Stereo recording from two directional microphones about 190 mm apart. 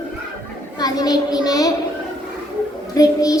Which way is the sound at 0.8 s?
20° left (ahead or behind).